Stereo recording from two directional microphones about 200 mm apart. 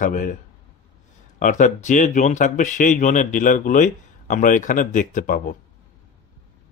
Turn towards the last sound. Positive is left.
turn(degrees=40)  # may be behind; listen again after turning